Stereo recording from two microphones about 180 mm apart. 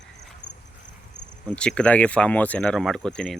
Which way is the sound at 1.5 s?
5° left (ahead or behind).